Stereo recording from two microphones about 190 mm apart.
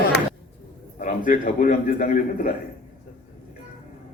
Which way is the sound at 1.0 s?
45° left (ahead or behind).